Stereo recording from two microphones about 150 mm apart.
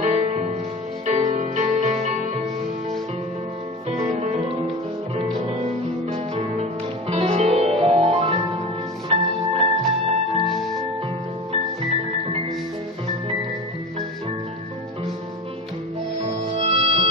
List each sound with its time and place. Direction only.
0.0 s music: 50° right (ahead or behind)
3.9 s music: 50° right (ahead or behind)
10.4 s music: centre (ahead or behind)
16.5 s music: 40° right (ahead or behind)